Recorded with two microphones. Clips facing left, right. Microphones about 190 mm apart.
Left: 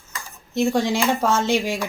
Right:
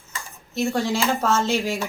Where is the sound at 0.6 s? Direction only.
15° left (ahead or behind).